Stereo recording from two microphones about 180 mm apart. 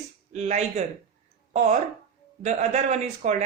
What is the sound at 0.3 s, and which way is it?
A man's voice, 40° right (ahead or behind).